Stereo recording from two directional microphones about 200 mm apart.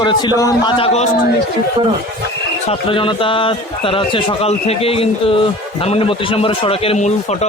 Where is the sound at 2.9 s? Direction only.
25° left (ahead or behind).